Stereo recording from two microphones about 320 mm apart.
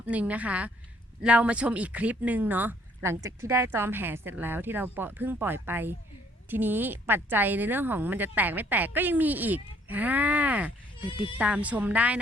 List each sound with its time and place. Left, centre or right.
0.0 s a woman's voice: centre